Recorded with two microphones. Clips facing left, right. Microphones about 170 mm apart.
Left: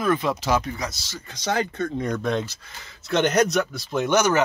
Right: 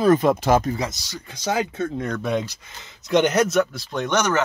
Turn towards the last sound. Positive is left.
turn(degrees=10)  # may be behind; listen again after turning